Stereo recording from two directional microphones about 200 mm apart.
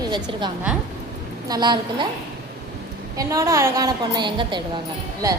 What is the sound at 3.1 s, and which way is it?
A woman's voice, 15° right (ahead or behind).